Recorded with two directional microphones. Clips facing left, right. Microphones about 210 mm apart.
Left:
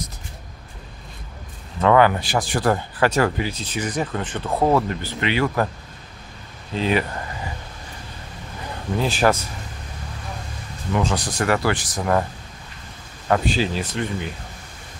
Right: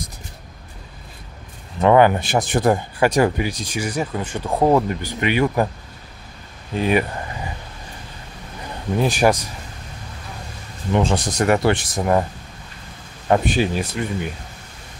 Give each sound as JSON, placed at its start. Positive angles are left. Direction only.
{"t": 1.8, "sound": "speech", "side_deg": -20}
{"t": 6.7, "sound": "speech", "side_deg": -15}
{"t": 9.0, "sound": "speech", "side_deg": -15}
{"t": 10.9, "sound": "speech", "side_deg": -25}
{"t": 13.3, "sound": "speech", "side_deg": -15}